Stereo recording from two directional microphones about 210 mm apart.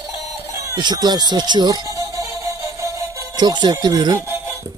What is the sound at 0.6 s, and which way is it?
Speech, 15° right (ahead or behind).